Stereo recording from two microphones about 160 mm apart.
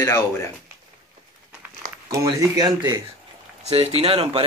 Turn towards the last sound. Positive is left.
turn(degrees=-35)  # may be behind; listen again after turning